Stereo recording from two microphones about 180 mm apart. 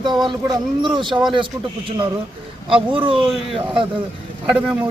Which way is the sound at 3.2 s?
5° right (ahead or behind).